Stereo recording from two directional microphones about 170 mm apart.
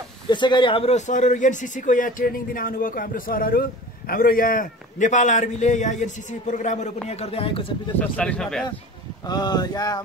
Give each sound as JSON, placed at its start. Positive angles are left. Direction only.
{"t": 0.3, "sound": "a man's voice", "side_deg": 25}
{"t": 8.0, "sound": "speech", "side_deg": 5}
{"t": 9.3, "sound": "speech", "side_deg": 25}